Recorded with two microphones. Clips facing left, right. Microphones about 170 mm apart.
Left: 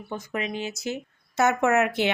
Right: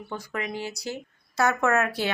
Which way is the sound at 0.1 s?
20° left (ahead or behind).